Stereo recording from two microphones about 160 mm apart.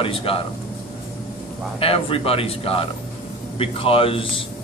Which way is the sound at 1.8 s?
35° left (ahead or behind).